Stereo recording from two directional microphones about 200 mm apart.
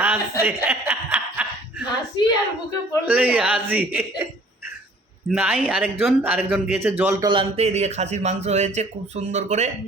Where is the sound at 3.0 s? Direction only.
5° right (ahead or behind); by 9.7 s 35° right (ahead or behind).